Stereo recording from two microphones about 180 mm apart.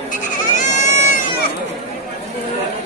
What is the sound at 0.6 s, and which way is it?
Goat, 45° left (ahead or behind).